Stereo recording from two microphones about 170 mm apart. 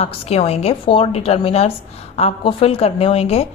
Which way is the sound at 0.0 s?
40° left (ahead or behind).